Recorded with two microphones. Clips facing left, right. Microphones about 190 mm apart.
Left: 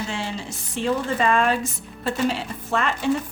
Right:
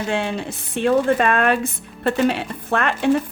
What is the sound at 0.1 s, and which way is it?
A woman's voice, 60° right (ahead or behind).